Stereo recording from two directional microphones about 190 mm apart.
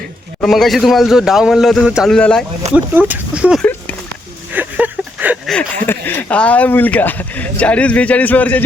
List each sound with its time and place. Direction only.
0.4 s a man's voice: centre (ahead or behind)
2.6 s speech: 35° right (ahead or behind)
3.1 s a man's voice: 5° right (ahead or behind)
3.6 s a sound: 10° left (ahead or behind)
4.5 s a sound: 10° right (ahead or behind)
5.5 s speech: 10° left (ahead or behind)